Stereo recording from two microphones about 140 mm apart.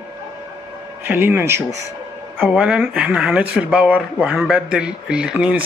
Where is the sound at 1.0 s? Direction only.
15° right (ahead or behind).